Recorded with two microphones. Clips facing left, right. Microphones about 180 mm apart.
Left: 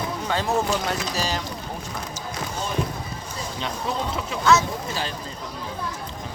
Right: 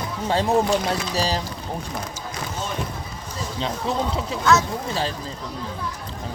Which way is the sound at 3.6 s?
30° right (ahead or behind).